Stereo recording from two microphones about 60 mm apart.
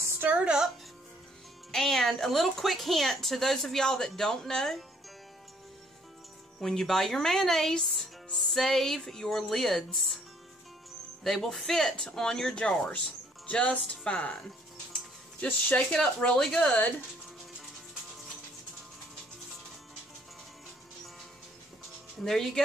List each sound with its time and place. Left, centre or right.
0.2 s speech: right
1.7 s speech: centre
6.6 s speech: centre
11.2 s speech: centre
15.7 s speech: centre
22.2 s speech: centre